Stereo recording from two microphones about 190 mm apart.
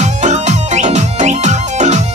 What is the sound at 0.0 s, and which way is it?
Music, 40° right (ahead or behind).